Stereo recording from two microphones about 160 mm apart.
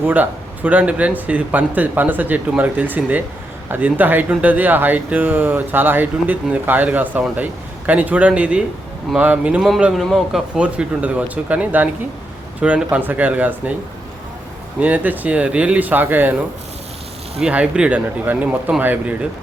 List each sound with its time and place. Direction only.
0.0 s speech: 10° right (ahead or behind)
14.8 s speech: 10° right (ahead or behind)
17.4 s speech: 5° right (ahead or behind)